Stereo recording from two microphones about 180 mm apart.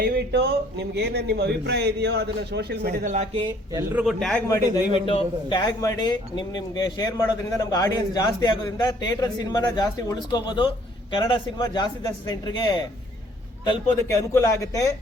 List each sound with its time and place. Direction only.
0.0 s speech: 60° right (ahead or behind)
3.1 s speech: 40° right (ahead or behind)
3.9 s a man's voice: centre (ahead or behind)
4.4 s a man's voice: 15° left (ahead or behind)
5.0 s a man's voice: 25° left (ahead or behind)
13.7 s a man's voice: 15° left (ahead or behind)